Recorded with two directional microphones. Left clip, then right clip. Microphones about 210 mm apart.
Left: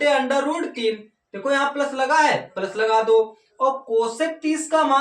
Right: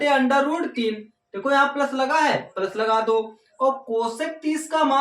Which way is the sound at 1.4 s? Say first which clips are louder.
Right 1 dB; 10° right (ahead or behind).